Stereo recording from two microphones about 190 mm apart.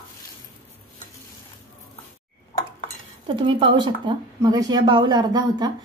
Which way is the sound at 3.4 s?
25° right (ahead or behind).